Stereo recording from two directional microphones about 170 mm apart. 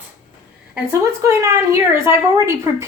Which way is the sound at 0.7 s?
15° right (ahead or behind).